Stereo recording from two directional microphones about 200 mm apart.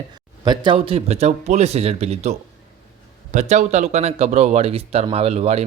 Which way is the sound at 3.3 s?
35° right (ahead or behind).